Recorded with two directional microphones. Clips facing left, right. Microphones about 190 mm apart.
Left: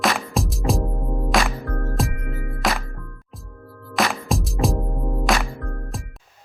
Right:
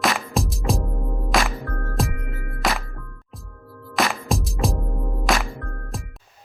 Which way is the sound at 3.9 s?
Centre (ahead or behind).